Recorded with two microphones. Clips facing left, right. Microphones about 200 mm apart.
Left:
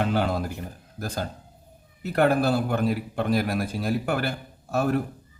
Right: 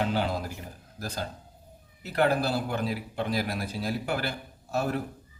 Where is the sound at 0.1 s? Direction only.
50° left (ahead or behind).